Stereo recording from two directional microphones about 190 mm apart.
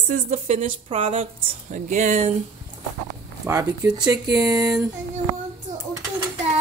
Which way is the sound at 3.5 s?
15° right (ahead or behind).